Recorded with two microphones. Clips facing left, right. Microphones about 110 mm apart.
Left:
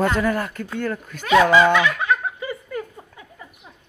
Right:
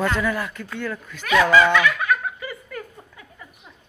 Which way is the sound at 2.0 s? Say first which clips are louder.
Left 1 dB; 25° left (ahead or behind).